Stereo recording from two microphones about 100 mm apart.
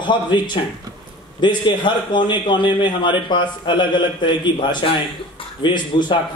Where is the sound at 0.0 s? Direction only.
50° left (ahead or behind).